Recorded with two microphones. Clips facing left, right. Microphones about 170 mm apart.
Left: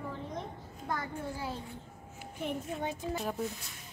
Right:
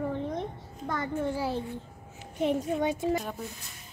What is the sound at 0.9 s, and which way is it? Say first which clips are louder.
A child's voice: right 7 dB; 80° right.